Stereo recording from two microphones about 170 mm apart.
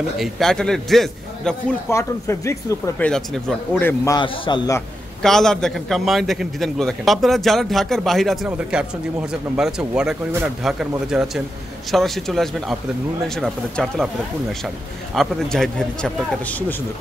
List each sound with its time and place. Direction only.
0.2 s a man's voice: centre (ahead or behind)
1.9 s speech: 15° left (ahead or behind)
3.0 s a man's voice: 5° left (ahead or behind)
4.0 s a man's voice: 25° left (ahead or behind)
5.2 s a man's voice: 5° left (ahead or behind)
15.1 s a man's voice: 5° left (ahead or behind)